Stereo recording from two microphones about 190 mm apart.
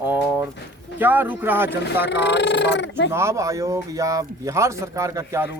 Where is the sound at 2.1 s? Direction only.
65° left (ahead or behind).